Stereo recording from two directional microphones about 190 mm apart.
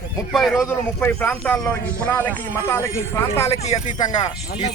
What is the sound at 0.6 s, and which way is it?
Speech, 10° left (ahead or behind).